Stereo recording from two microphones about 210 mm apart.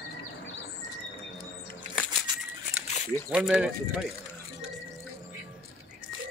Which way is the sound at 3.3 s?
5° right (ahead or behind).